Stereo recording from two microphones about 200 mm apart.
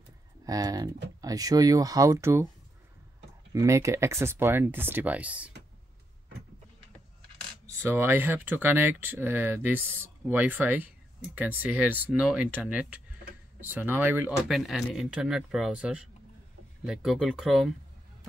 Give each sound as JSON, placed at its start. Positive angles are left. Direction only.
{"t": 0.5, "sound": "speech", "side_deg": -20}
{"t": 3.5, "sound": "speech", "side_deg": -15}
{"t": 7.6, "sound": "speech", "side_deg": -10}